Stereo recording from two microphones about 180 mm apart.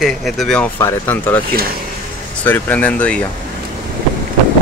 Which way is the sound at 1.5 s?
55° right (ahead or behind).